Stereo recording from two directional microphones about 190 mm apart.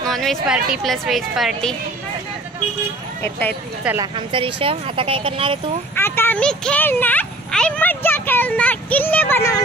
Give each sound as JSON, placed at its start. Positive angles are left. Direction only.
{"t": 0.0, "sound": "a sound", "side_deg": 0}
{"t": 0.7, "sound": "speech", "side_deg": 0}
{"t": 3.8, "sound": "speech", "side_deg": -10}
{"t": 4.3, "sound": "speech", "side_deg": -25}
{"t": 5.9, "sound": "speech", "side_deg": 10}